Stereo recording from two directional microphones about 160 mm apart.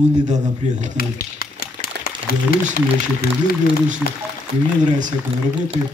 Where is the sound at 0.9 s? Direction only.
70° left (ahead or behind).